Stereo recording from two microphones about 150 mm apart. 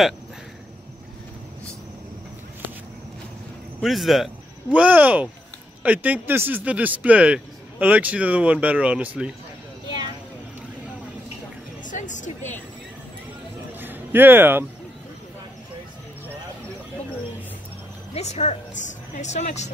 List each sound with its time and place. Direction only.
3.8 s speech: centre (ahead or behind)
11.8 s music: 55° left (ahead or behind)
13.7 s a sound: 15° right (ahead or behind)
18.1 s a woman's voice: 50° left (ahead or behind)